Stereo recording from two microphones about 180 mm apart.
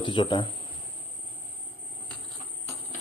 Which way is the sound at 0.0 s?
25° left (ahead or behind).